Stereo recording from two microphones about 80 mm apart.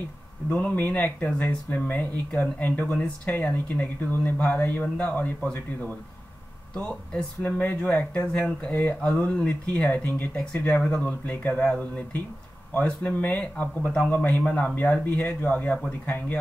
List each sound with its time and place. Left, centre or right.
0.5 s speech: centre